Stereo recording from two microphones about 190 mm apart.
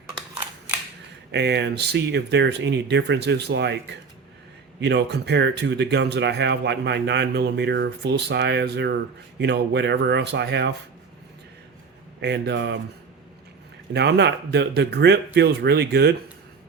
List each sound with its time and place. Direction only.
1.3 s speech: 65° right (ahead or behind)
12.2 s speech: 65° right (ahead or behind)
13.9 s speech: 65° right (ahead or behind)